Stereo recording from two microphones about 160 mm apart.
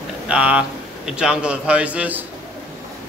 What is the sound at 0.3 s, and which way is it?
Speech, 5° right (ahead or behind).